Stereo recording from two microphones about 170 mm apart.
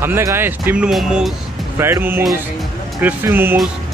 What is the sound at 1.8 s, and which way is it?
Speech, 15° right (ahead or behind).